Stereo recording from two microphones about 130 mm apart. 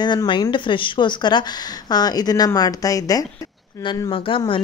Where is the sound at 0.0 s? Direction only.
35° left (ahead or behind).